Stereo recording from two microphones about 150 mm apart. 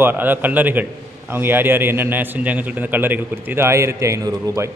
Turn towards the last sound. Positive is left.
turn(degrees=-20)  # may be behind; listen again after turning